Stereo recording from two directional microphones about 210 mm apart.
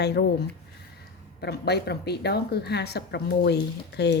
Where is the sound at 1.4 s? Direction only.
50° left (ahead or behind).